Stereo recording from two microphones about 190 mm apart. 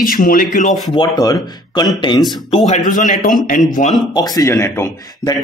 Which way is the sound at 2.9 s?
45° left (ahead or behind).